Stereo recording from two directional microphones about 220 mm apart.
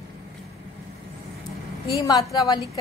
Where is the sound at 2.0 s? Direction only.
20° left (ahead or behind).